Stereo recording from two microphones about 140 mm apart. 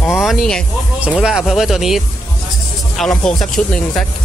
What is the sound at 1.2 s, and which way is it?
Speech, centre (ahead or behind).